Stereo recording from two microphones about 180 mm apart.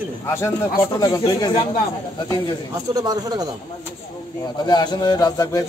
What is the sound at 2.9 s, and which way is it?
Speech, 20° right (ahead or behind).